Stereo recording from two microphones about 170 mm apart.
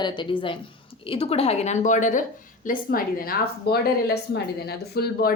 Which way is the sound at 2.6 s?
60° left (ahead or behind).